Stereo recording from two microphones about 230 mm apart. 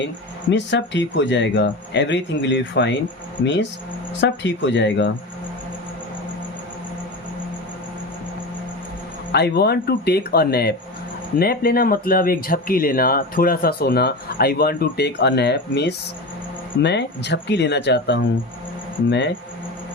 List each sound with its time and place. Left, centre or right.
0.5 s speech: left
9.3 s speech: left